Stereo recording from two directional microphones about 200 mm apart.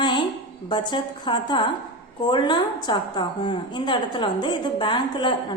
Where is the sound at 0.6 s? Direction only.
20° left (ahead or behind).